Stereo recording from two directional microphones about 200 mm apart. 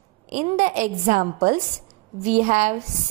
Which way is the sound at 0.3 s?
35° right (ahead or behind).